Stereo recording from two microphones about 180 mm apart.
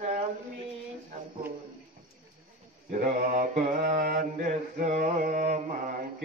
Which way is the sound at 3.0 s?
45° right (ahead or behind).